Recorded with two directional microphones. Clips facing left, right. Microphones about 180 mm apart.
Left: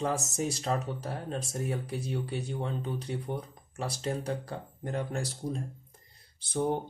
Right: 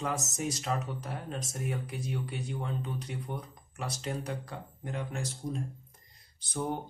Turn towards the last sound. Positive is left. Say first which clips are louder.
# left 5 dB
turn(degrees=30)  # may be behind; listen again after turning